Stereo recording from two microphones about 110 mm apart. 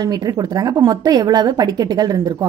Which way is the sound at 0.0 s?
35° right (ahead or behind).